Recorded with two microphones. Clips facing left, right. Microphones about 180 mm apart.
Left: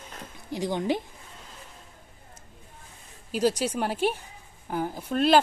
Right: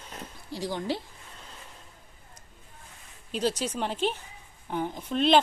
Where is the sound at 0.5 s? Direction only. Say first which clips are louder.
Left 4 dB; 20° left (ahead or behind).